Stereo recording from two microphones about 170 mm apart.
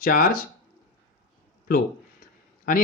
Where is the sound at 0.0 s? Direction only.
55° left (ahead or behind).